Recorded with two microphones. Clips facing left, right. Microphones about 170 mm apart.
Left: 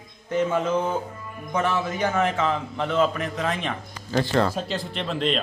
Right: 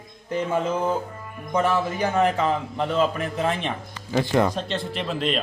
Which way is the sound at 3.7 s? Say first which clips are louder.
Right 1 dB; 15° right (ahead or behind).